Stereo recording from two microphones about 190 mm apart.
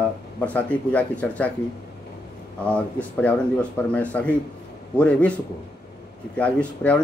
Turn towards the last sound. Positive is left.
turn(degrees=5)  # may be behind; listen again after turning